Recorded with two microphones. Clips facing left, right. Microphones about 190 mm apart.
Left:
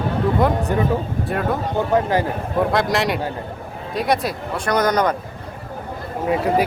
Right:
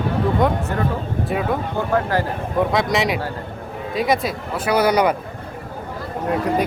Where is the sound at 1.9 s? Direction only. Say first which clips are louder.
Left 2 dB; 20° left (ahead or behind).